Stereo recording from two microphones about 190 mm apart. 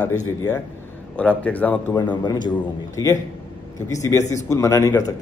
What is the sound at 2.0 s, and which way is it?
A man's voice, 25° left (ahead or behind).